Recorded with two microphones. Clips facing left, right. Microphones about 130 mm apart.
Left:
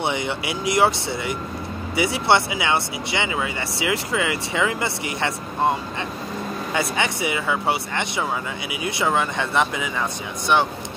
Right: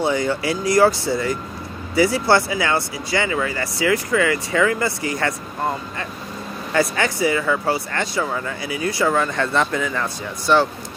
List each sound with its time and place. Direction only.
0.0 s speech: 20° left (ahead or behind)
7.0 s speech: 20° left (ahead or behind)